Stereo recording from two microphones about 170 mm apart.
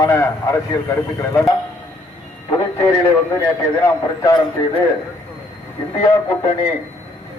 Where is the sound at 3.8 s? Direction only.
20° left (ahead or behind).